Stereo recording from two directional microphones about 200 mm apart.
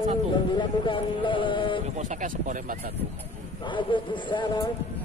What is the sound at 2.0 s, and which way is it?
Speech, 40° right (ahead or behind).